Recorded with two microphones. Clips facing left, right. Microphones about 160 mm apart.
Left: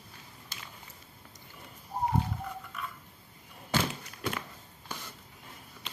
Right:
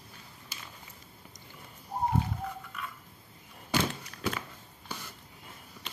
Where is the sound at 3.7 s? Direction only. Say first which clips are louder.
Right 1 dB; 15° right (ahead or behind).